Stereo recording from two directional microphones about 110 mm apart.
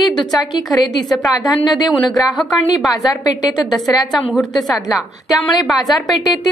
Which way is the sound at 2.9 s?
35° left (ahead or behind).